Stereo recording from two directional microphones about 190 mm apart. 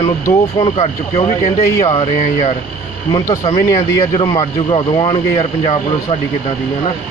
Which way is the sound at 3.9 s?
25° left (ahead or behind).